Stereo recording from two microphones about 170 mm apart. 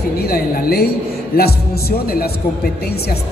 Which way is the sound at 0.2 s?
65° left (ahead or behind).